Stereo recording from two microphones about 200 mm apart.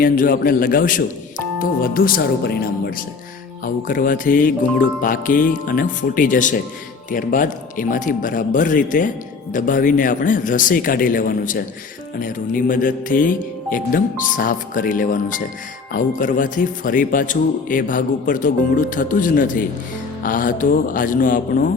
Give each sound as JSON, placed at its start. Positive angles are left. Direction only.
{"t": 0.0, "sound": "a man's voice", "side_deg": 45}